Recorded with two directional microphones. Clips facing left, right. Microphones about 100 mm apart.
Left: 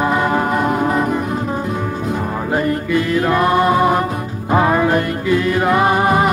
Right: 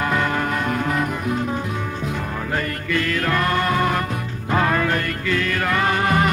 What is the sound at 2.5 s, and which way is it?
Music, 20° left (ahead or behind).